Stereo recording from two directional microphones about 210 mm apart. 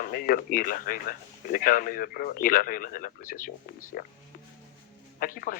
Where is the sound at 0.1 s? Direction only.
40° left (ahead or behind).